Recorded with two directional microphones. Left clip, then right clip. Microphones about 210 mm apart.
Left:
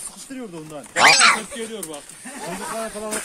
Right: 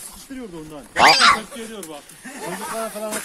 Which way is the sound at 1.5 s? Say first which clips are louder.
Left 2 dB; 55° left (ahead or behind).